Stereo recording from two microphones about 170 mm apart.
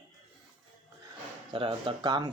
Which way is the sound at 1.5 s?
30° right (ahead or behind).